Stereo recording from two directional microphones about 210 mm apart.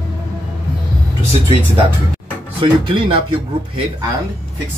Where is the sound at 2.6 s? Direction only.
25° right (ahead or behind).